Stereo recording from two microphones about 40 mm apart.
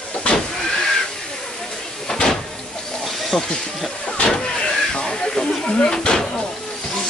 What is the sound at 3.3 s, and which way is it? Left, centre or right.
Speech, centre.